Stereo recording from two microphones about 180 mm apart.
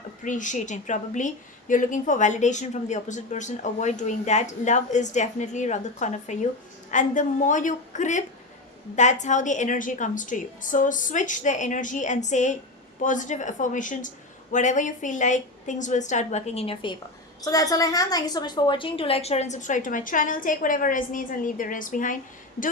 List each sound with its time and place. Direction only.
0.3 s a woman's voice: 45° left (ahead or behind)